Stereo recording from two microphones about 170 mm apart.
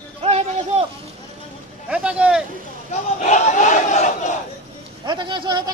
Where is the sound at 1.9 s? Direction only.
5° right (ahead or behind).